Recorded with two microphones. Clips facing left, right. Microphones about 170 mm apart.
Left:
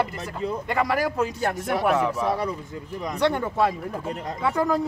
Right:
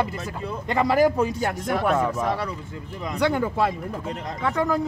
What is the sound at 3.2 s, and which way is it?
Speech, 5° right (ahead or behind).